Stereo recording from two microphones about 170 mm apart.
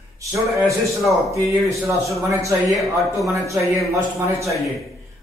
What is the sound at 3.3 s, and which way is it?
A man's voice, 20° right (ahead or behind).